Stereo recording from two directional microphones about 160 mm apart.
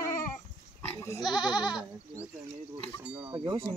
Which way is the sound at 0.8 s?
15° left (ahead or behind).